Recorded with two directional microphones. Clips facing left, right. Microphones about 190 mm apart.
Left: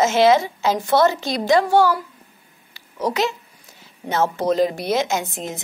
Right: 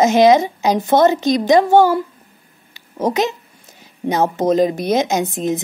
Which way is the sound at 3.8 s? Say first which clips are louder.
Right 4 dB; 15° right (ahead or behind).